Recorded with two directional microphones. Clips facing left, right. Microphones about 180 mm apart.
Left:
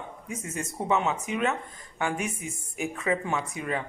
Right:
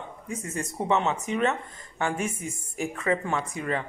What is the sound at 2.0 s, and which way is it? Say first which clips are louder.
Speech: right 1 dB; 15° left (ahead or behind).